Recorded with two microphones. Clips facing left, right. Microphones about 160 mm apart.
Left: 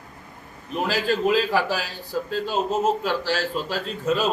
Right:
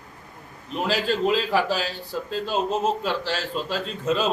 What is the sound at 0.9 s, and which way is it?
A man's voice, 5° left (ahead or behind).